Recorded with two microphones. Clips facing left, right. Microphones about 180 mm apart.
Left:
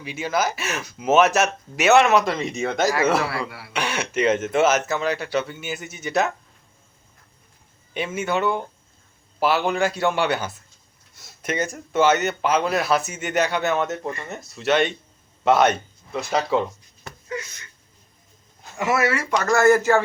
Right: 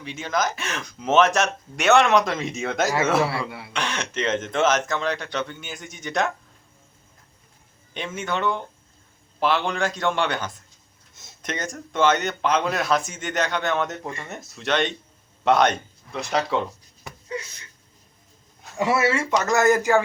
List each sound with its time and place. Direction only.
0.0 s speech: 10° left (ahead or behind)
3.2 s speech: 25° right (ahead or behind)
3.7 s speech: 10° left (ahead or behind)
7.9 s speech: 10° left (ahead or behind)
11.1 s a sound: 20° right (ahead or behind)
11.4 s speech: 10° left (ahead or behind)
17.2 s a sound: 30° right (ahead or behind)
18.8 s speech: 30° right (ahead or behind)